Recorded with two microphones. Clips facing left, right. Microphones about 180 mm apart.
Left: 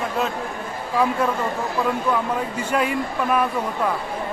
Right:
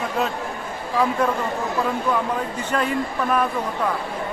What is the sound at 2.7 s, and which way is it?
Speech, 10° left (ahead or behind).